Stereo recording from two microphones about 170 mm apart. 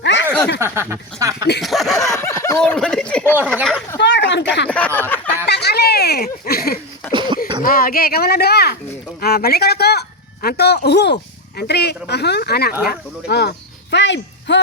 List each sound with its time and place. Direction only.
0.0 s a sound: 90° left
0.6 s speech: 15° right (ahead or behind)
1.6 s speech: centre (ahead or behind)
2.0 s speech: 20° left (ahead or behind)
2.7 s speech: 5° left (ahead or behind)
3.3 s speech: 10° right (ahead or behind)
3.9 s speech: 90° left
4.9 s a sound: 10° left (ahead or behind)
5.5 s speech: 75° left (ahead or behind)
7.1 s throat clearing: 30° right (ahead or behind)
7.6 s speech: 60° left (ahead or behind); by 13.5 s 75° left (ahead or behind)
13.9 s speech: 90° left